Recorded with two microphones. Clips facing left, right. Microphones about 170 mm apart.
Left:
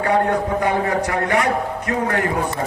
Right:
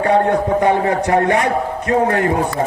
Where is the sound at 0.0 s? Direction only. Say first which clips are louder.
Right 4 dB; 30° right (ahead or behind).